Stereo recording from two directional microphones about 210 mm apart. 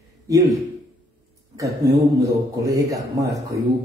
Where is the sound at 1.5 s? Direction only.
15° right (ahead or behind).